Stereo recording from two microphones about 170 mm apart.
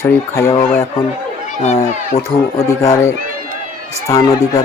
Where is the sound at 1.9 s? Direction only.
40° left (ahead or behind).